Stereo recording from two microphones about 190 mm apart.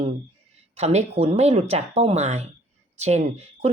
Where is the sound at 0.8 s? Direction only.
35° right (ahead or behind).